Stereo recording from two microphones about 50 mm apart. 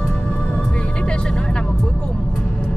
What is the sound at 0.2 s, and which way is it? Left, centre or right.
Music, left.